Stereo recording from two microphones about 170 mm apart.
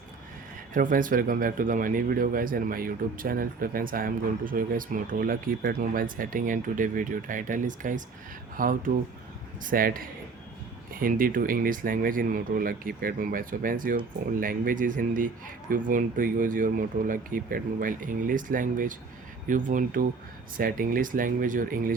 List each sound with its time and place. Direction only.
0.7 s speech: 55° right (ahead or behind)